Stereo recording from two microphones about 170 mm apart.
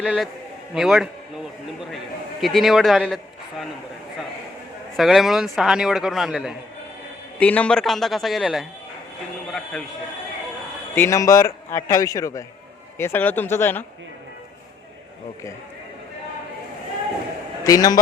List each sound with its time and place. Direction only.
0.0 s a man's voice: 5° right (ahead or behind)
2.4 s a man's voice: centre (ahead or behind)
4.9 s a man's voice: centre (ahead or behind)
7.3 s a man's voice: 5° left (ahead or behind)
10.9 s a man's voice: 15° left (ahead or behind)
17.6 s a man's voice: 20° left (ahead or behind)